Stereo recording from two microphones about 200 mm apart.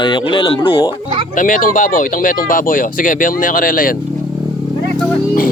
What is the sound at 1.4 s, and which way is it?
Speech, 40° left (ahead or behind).